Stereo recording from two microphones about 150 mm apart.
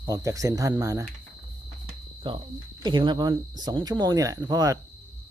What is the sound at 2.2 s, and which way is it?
A woman's voice, 30° right (ahead or behind).